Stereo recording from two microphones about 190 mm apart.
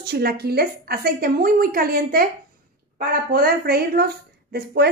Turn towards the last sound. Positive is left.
turn(degrees=-55)  # may be behind; listen again after turning